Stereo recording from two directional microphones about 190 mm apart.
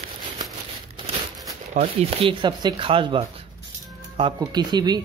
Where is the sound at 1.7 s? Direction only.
35° right (ahead or behind).